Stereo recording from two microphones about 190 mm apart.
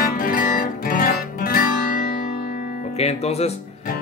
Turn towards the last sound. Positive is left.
turn(degrees=35)  # may be behind; listen again after turning